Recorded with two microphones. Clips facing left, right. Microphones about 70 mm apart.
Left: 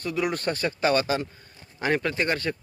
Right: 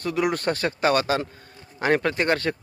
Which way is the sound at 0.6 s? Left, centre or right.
Right.